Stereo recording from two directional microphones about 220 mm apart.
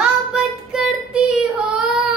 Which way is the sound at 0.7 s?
Centre (ahead or behind).